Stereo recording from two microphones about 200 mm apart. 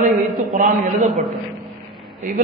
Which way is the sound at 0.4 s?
40° right (ahead or behind).